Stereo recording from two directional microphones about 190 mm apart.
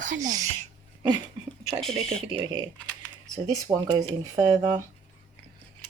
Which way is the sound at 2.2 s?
25° right (ahead or behind).